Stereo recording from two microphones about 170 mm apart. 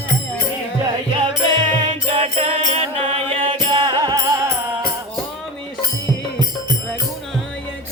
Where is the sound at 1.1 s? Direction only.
30° right (ahead or behind).